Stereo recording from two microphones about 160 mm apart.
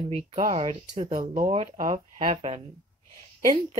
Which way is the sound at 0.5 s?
30° right (ahead or behind).